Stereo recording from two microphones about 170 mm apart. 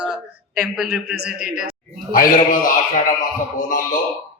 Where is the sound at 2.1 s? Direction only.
55° left (ahead or behind).